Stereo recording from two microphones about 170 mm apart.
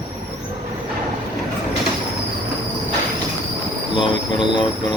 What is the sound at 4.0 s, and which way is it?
Speech, 30° left (ahead or behind).